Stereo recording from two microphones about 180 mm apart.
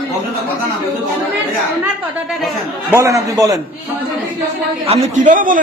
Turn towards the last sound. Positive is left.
turn(degrees=-50)  # may be behind; listen again after turning